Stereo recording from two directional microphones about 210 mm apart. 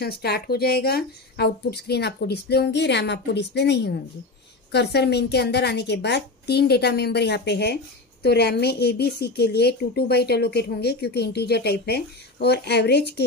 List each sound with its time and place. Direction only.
0.0 s a woman's voice: 50° left (ahead or behind)